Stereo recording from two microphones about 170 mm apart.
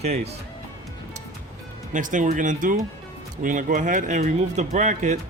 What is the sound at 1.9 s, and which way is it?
Speech, 50° right (ahead or behind).